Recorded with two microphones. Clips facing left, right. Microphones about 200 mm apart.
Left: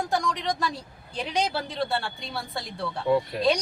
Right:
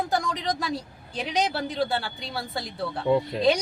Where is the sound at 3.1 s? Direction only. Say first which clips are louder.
Even; 20° right (ahead or behind).